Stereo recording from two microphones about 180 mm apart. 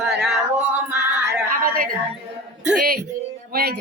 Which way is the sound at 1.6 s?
55° right (ahead or behind).